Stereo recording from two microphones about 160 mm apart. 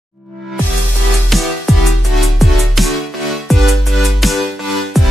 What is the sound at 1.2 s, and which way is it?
Music, centre (ahead or behind).